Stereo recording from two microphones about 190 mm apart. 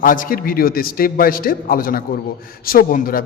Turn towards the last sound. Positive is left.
turn(degrees=50)  # may be behind; listen again after turning